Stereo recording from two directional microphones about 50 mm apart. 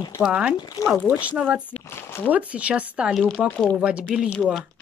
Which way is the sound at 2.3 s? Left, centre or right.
Right.